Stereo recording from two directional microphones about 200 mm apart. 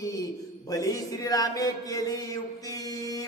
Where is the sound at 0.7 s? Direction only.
15° left (ahead or behind).